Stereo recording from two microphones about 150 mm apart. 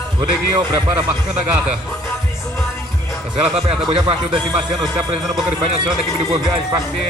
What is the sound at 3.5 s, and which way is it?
Speech, 40° right (ahead or behind).